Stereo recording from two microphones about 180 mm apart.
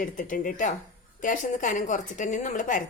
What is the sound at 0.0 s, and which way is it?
A woman's voice, 50° left (ahead or behind).